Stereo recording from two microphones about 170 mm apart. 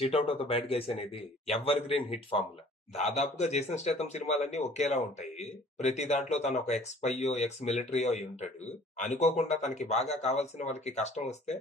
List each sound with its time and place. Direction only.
0.0 s speech: 35° left (ahead or behind)